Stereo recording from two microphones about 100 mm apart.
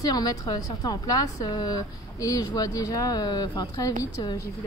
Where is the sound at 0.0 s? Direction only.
40° left (ahead or behind).